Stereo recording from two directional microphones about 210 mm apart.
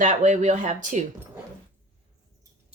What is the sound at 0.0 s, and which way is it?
Speech, 35° right (ahead or behind).